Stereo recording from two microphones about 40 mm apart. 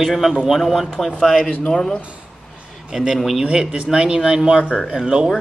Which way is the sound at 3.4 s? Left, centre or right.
Right.